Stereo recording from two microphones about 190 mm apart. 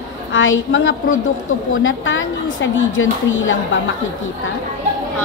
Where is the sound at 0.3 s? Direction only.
85° left.